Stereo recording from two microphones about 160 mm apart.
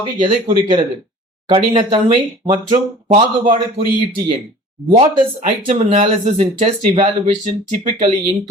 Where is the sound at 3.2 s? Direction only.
35° right (ahead or behind).